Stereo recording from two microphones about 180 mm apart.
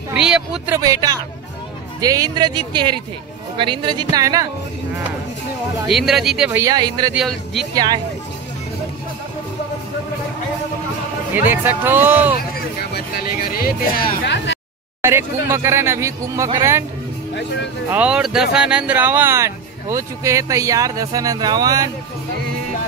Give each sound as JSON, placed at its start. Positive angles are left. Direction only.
{"t": 0.1, "sound": "speech", "side_deg": -5}
{"t": 0.7, "sound": "speech", "side_deg": -20}
{"t": 5.9, "sound": "speech", "side_deg": 0}
{"t": 6.6, "sound": "speech", "side_deg": -20}
{"t": 7.2, "sound": "speech", "side_deg": 0}
{"t": 7.7, "sound": "speech", "side_deg": -20}
{"t": 11.3, "sound": "speech", "side_deg": -10}
{"t": 12.9, "sound": "music", "side_deg": 55}
{"t": 15.0, "sound": "speech", "side_deg": -15}
{"t": 17.9, "sound": "speech", "side_deg": -5}